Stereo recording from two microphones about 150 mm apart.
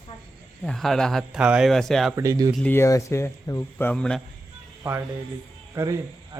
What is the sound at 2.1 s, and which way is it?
Speech, 20° right (ahead or behind).